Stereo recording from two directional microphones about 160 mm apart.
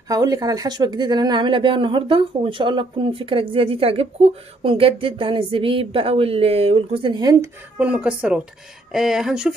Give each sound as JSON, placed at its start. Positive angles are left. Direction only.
{"t": 0.1, "sound": "speech", "side_deg": -25}
{"t": 7.8, "sound": "speech", "side_deg": -5}